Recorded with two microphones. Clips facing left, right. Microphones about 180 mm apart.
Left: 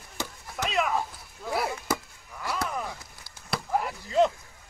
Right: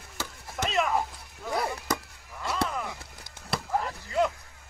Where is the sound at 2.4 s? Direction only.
25° right (ahead or behind).